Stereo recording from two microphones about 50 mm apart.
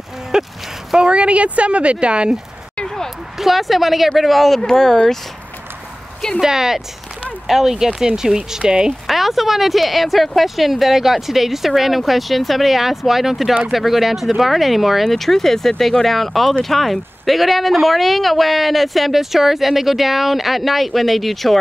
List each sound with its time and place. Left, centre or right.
0.3 s a sound: centre
0.9 s speech: right
3.3 s speech: centre
6.4 s speech: centre
9.0 s speech: centre